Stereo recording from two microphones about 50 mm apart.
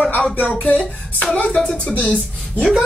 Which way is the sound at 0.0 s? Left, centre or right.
Left.